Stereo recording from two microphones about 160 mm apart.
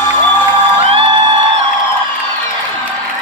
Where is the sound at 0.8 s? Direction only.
40° right (ahead or behind).